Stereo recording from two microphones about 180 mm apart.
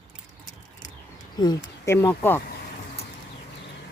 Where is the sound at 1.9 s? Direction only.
15° left (ahead or behind).